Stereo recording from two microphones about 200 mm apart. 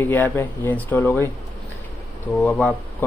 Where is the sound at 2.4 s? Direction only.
5° left (ahead or behind).